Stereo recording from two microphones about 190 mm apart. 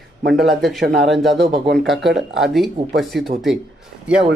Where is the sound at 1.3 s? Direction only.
65° right (ahead or behind).